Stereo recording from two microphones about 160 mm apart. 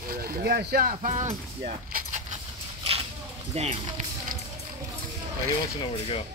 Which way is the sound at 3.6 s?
40° right (ahead or behind).